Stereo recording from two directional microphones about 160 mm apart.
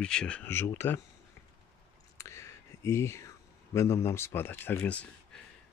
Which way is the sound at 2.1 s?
20° left (ahead or behind).